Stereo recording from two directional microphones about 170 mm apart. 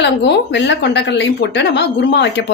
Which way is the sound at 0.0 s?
85° left.